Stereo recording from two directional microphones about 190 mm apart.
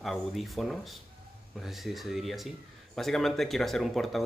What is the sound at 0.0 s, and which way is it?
Speech, centre (ahead or behind).